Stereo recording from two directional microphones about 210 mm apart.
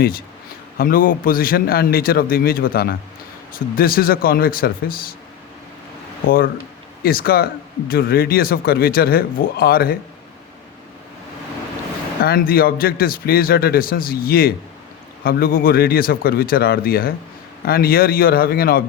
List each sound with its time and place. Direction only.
0.8 s speech: 45° left (ahead or behind)
6.2 s speech: 45° left (ahead or behind)
12.2 s speech: 45° left (ahead or behind)